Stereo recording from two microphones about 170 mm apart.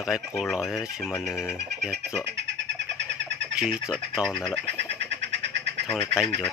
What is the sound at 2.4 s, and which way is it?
Cat, 90° right.